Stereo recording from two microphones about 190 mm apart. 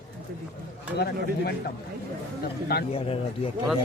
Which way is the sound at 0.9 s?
60° left (ahead or behind).